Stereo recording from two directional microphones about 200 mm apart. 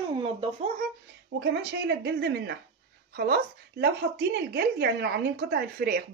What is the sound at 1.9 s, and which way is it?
Speech, 55° right (ahead or behind).